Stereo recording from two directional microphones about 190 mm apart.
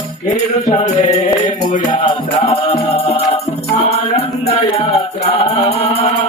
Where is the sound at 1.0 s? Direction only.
35° left (ahead or behind).